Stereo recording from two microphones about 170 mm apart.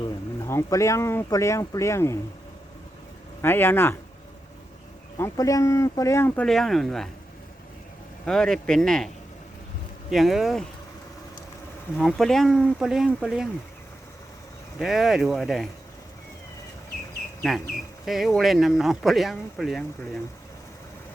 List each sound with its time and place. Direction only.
0.0 s speech: 15° left (ahead or behind)
3.4 s speech: 10° left (ahead or behind)
5.1 s speech: 15° left (ahead or behind); by 7.1 s centre (ahead or behind)
8.2 s speech: 5° left (ahead or behind)
10.1 s speech: centre (ahead or behind)
11.9 s speech: centre (ahead or behind)
14.8 s speech: centre (ahead or behind)
18.0 s speech: centre (ahead or behind)